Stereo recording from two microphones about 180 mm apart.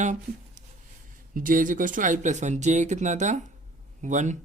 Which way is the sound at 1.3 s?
50° right (ahead or behind).